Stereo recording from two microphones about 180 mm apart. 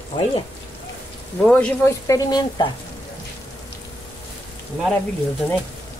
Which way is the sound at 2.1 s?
20° left (ahead or behind).